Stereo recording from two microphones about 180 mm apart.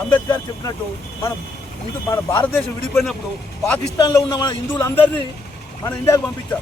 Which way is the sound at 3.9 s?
20° left (ahead or behind).